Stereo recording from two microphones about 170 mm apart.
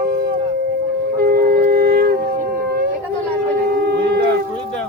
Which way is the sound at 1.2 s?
65° right (ahead or behind).